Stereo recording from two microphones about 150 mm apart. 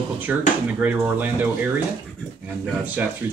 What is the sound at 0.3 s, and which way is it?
Speech, 10° right (ahead or behind).